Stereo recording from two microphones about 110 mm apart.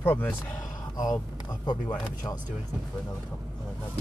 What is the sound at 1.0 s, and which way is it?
Speech, 35° left (ahead or behind).